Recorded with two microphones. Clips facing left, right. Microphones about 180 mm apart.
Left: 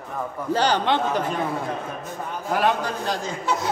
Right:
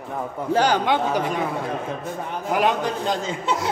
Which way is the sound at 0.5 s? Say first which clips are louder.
Right 2 dB; 10° right (ahead or behind).